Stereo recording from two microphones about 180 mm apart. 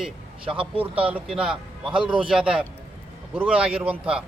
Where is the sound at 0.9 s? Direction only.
10° right (ahead or behind).